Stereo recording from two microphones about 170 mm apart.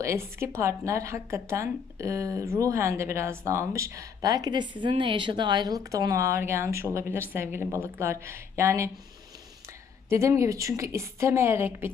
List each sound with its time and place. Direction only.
0.0 s speech: 15° right (ahead or behind)
10.1 s speech: 15° right (ahead or behind)